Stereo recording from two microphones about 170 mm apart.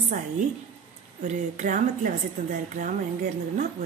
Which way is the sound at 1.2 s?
50° right (ahead or behind).